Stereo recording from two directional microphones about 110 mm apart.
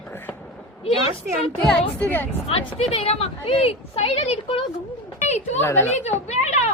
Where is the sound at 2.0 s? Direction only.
15° left (ahead or behind).